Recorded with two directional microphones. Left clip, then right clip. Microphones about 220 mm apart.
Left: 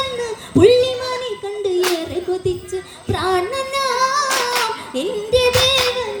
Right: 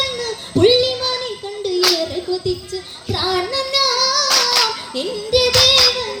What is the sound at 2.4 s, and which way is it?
Female singing, 55° left (ahead or behind).